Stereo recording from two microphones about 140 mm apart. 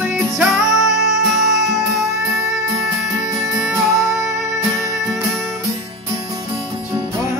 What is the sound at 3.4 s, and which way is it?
Music, 20° right (ahead or behind).